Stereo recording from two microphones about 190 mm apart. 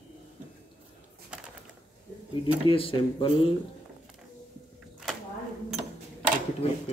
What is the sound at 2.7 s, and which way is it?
Speech, 30° left (ahead or behind).